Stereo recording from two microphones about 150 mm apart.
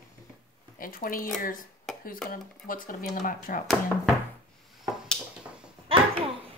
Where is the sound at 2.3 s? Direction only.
65° left (ahead or behind).